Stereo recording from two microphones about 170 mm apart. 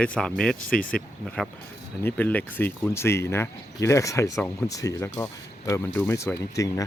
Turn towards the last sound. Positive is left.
turn(degrees=20)  # may be behind; listen again after turning